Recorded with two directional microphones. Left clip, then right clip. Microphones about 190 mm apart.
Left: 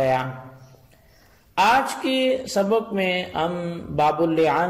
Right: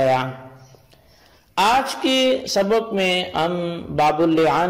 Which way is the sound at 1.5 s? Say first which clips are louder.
Right 1 dB; 30° right (ahead or behind).